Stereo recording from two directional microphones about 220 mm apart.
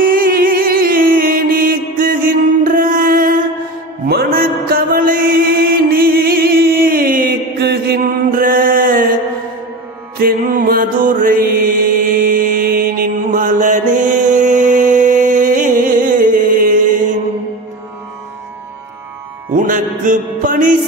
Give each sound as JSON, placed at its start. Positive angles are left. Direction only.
{"t": 0.0, "sound": "mantra", "side_deg": -40}
{"t": 10.1, "sound": "mantra", "side_deg": -40}
{"t": 19.5, "sound": "music", "side_deg": -35}